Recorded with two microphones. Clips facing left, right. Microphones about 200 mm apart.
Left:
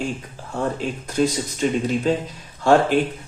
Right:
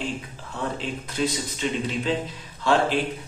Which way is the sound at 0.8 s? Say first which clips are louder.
Left 6 dB; 45° left (ahead or behind).